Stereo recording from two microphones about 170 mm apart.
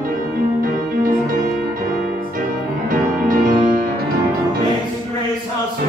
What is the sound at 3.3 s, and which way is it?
Music, 55° right (ahead or behind).